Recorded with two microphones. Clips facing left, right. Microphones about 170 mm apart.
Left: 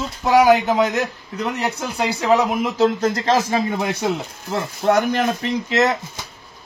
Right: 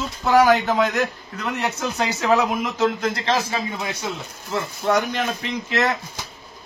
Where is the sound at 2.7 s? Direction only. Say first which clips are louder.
Left 5 dB; 40° left (ahead or behind).